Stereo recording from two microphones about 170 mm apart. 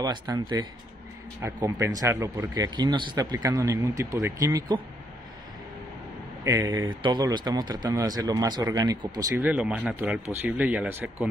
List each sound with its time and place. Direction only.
0.0 s a man's voice: 20° right (ahead or behind)
6.4 s a man's voice: 20° right (ahead or behind)
9.4 s speech: 10° right (ahead or behind)